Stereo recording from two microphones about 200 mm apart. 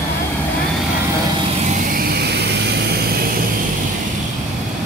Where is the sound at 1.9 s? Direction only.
55° right (ahead or behind).